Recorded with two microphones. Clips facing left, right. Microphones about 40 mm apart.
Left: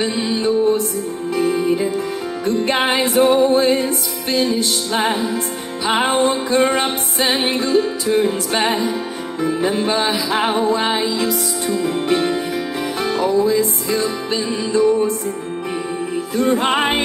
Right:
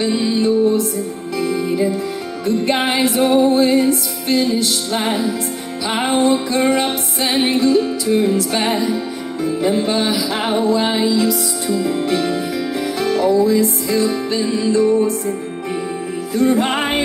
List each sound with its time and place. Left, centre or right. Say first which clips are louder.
0.1 s music: right 3 dB; left
0.4 s music: even; left
16.3 s music: right 1 dB; left